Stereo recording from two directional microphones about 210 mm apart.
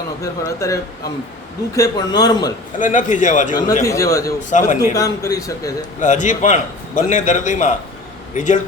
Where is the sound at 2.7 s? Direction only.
40° left (ahead or behind).